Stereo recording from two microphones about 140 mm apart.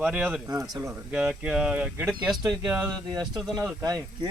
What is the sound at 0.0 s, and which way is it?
Speech, 10° right (ahead or behind).